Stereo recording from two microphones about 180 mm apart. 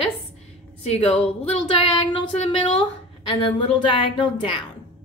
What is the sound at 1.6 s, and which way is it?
A woman's voice, 30° left (ahead or behind).